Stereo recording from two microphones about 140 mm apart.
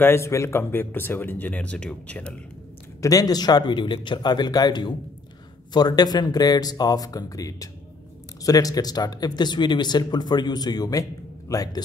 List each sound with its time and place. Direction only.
0.0 s speech: 20° left (ahead or behind)
3.0 s a man's voice: 25° left (ahead or behind)